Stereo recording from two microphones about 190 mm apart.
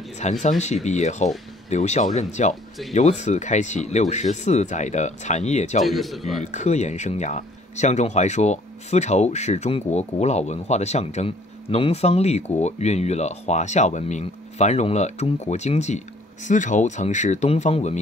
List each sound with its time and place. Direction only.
0.2 s speech: 40° left (ahead or behind)
5.9 s speech: centre (ahead or behind)
6.4 s speech: 35° left (ahead or behind)